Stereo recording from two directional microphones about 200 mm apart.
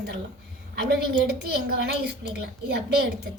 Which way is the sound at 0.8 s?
55° right (ahead or behind).